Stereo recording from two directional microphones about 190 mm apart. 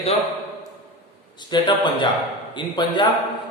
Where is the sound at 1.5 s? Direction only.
25° left (ahead or behind).